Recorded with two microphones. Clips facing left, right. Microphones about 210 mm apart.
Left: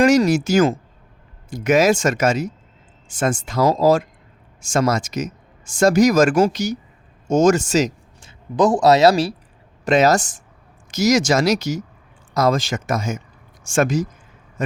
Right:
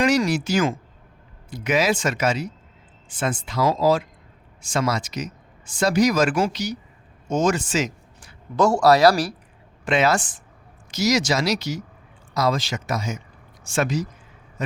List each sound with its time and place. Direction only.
0.0 s speech: 45° left (ahead or behind)
8.2 s speech: 20° left (ahead or behind)
9.8 s speech: 40° left (ahead or behind)